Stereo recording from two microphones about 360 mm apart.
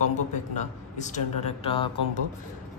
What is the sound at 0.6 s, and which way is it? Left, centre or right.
A man's voice, centre.